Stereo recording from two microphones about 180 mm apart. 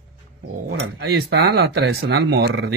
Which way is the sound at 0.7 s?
75° right (ahead or behind).